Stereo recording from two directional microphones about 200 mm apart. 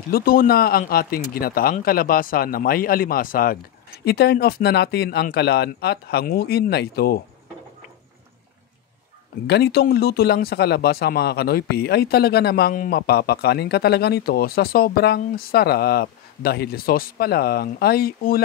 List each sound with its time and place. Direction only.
0.1 s speech: 45° left (ahead or behind)
9.5 s speech: 55° left (ahead or behind)